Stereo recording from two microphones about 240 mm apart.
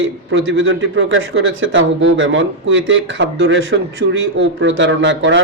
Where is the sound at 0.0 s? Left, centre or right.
Right.